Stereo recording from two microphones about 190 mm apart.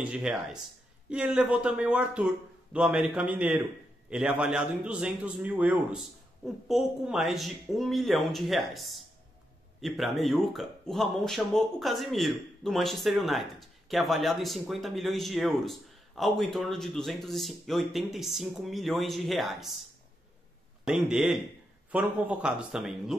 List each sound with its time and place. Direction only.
0.0 s speech: 5° right (ahead or behind)
20.8 s speech: 5° right (ahead or behind)